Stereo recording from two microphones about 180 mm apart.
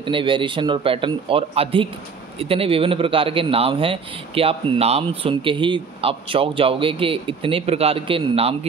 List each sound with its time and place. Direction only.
0.0 s speech: 30° right (ahead or behind)